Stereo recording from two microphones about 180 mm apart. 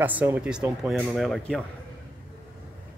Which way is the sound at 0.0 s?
10° right (ahead or behind).